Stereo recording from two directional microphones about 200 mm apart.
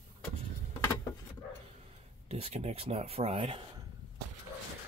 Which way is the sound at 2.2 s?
30° right (ahead or behind).